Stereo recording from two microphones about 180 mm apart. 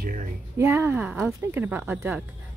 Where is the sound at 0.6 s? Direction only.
15° right (ahead or behind).